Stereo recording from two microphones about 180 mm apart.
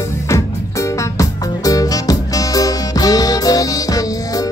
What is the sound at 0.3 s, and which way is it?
Music, 15° left (ahead or behind).